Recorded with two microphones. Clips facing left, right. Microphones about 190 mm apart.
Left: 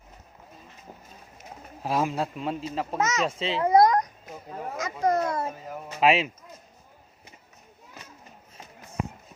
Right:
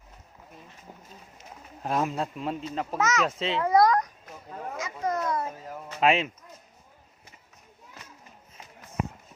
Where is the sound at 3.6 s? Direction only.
20° left (ahead or behind).